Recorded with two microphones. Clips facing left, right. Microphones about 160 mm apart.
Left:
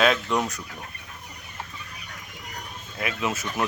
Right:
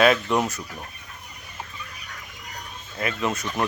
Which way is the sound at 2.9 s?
5° left (ahead or behind).